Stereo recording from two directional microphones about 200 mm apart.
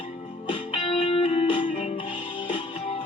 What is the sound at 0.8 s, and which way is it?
Music, 25° left (ahead or behind).